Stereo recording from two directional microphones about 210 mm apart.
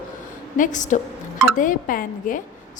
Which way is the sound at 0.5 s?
35° left (ahead or behind).